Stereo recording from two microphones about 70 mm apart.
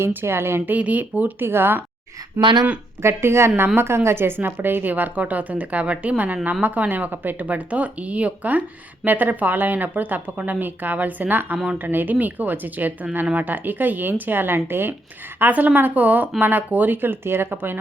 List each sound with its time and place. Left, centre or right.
0.0 s a woman's voice: right
1.5 s speech: right
3.0 s a woman's voice: right
11.5 s a woman's voice: centre
11.8 s a woman's voice: right